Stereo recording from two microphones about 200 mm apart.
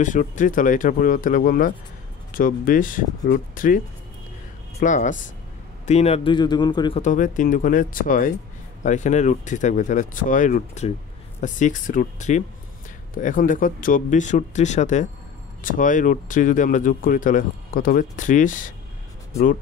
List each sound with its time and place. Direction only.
0.0 s speech: 40° left (ahead or behind); by 7.0 s 20° left (ahead or behind)
7.0 s speech: 40° left (ahead or behind)